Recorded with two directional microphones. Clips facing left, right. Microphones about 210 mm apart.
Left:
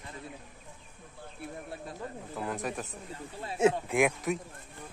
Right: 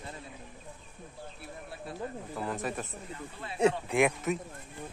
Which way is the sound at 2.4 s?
Centre (ahead or behind).